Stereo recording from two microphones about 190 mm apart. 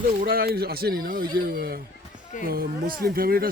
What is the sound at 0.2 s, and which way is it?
Speech, 50° right (ahead or behind).